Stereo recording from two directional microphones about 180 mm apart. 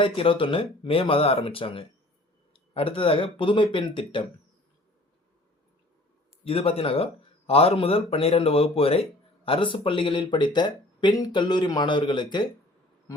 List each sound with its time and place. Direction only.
0.0 s speech: 30° left (ahead or behind)
6.4 s speech: 30° left (ahead or behind)